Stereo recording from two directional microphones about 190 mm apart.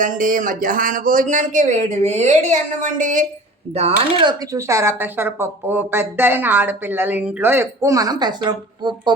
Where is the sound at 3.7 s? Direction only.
30° right (ahead or behind).